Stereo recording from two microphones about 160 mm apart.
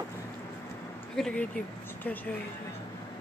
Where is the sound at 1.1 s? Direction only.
5° left (ahead or behind).